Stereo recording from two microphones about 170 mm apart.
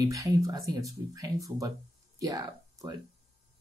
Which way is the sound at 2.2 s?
20° right (ahead or behind).